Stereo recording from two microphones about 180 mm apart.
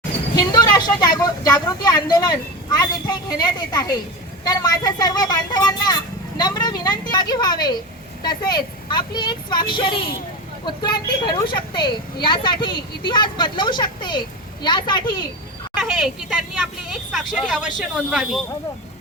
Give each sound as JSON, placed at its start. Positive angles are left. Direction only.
{"t": 0.3, "sound": "speech", "side_deg": 20}
{"t": 15.8, "sound": "a woman's voice", "side_deg": 0}